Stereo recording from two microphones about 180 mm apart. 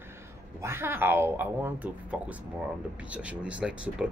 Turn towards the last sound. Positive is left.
turn(degrees=-5)  # may be behind; listen again after turning